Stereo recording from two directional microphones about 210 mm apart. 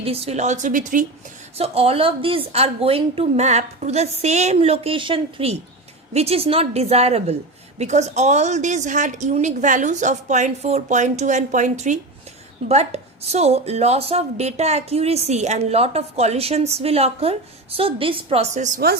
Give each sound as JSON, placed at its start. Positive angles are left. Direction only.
{"t": 0.0, "sound": "a woman's voice", "side_deg": -30}
{"t": 1.5, "sound": "a woman's voice", "side_deg": -30}